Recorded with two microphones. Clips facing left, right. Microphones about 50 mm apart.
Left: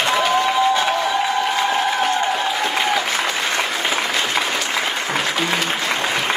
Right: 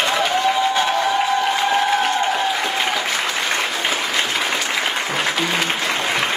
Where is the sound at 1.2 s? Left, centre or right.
Centre.